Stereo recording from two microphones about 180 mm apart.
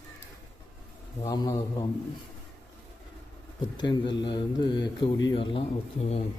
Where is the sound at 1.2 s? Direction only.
20° left (ahead or behind).